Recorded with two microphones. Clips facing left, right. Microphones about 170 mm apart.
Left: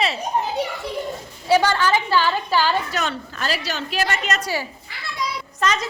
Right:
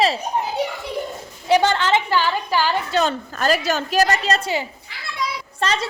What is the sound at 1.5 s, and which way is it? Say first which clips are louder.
A woman's voice: right 1 dB; 20° right (ahead or behind).